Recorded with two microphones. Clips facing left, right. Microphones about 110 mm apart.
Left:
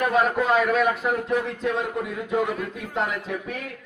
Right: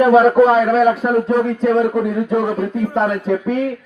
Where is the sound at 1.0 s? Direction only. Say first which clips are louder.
Right 9 dB; 40° right (ahead or behind).